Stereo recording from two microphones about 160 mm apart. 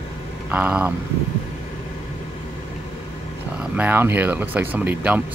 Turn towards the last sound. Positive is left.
turn(degrees=-10)  # may be behind; listen again after turning